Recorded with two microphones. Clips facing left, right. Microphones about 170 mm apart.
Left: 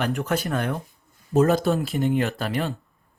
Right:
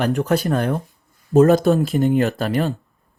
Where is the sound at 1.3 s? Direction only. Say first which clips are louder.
Right 6 dB; 45° right (ahead or behind).